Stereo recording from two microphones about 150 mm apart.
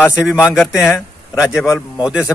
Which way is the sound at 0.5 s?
Centre (ahead or behind).